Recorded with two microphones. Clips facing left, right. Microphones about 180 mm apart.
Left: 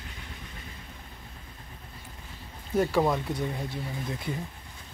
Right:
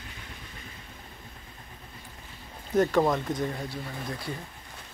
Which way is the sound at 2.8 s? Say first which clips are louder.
Right 2 dB; 10° left (ahead or behind).